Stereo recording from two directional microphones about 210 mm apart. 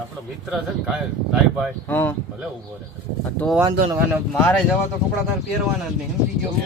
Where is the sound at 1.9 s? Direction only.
10° left (ahead or behind).